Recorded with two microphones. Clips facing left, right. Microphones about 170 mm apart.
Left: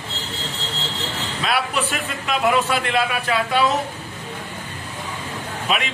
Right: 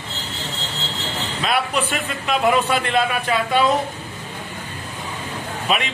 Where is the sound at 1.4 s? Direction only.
Centre (ahead or behind).